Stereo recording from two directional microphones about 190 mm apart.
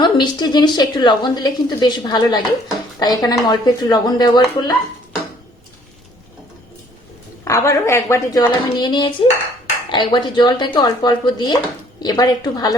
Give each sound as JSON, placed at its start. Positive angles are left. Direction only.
{"t": 0.0, "sound": "a woman's voice", "side_deg": 25}
{"t": 7.4, "sound": "a woman's voice", "side_deg": 15}